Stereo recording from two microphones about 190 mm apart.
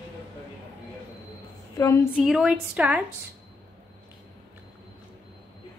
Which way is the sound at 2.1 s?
5° right (ahead or behind).